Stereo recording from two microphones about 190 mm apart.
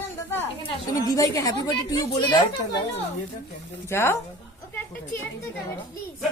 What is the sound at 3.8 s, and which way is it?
Speech, 15° left (ahead or behind).